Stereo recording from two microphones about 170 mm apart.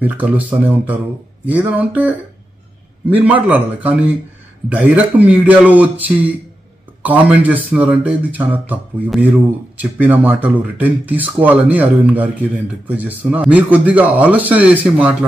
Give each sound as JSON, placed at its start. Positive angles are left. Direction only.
{"t": 0.0, "sound": "speech", "side_deg": -10}